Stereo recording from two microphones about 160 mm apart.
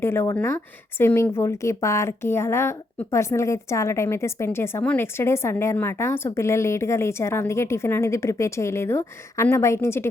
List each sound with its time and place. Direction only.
0.0 s a woman's voice: 15° left (ahead or behind)